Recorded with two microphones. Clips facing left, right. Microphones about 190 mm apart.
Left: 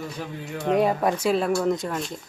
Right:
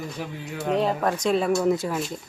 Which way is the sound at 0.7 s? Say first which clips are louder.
Left 2 dB; 10° left (ahead or behind).